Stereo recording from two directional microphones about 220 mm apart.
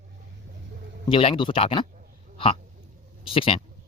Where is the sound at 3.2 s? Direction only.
25° left (ahead or behind).